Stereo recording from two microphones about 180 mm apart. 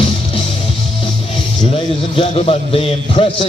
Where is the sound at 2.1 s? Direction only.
30° left (ahead or behind).